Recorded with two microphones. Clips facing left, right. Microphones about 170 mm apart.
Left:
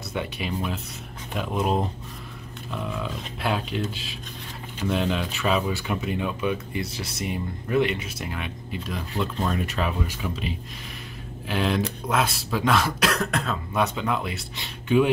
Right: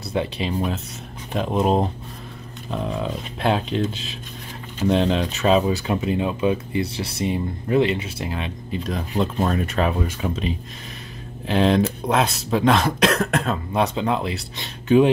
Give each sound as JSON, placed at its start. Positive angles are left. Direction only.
{"t": 0.1, "sound": "speech", "side_deg": -25}
{"t": 4.8, "sound": "speech", "side_deg": -30}
{"t": 6.1, "sound": "speech", "side_deg": -25}
{"t": 9.2, "sound": "speech", "side_deg": -40}
{"t": 11.4, "sound": "speech", "side_deg": -35}
{"t": 13.7, "sound": "speech", "side_deg": -30}